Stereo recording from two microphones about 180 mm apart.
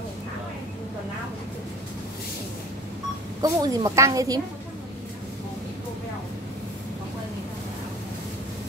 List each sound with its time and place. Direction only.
3.4 s a woman's voice: 20° right (ahead or behind)